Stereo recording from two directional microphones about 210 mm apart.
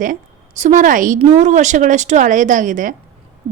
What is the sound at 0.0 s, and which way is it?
A woman's voice, 35° right (ahead or behind).